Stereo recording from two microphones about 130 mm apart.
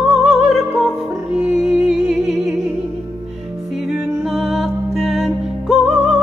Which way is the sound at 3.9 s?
Centre (ahead or behind).